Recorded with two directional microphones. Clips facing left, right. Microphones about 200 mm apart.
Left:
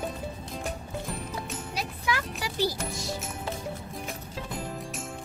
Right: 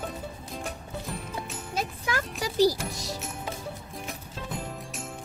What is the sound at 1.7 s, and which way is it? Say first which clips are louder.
Music: right 2 dB; 45° right (ahead or behind).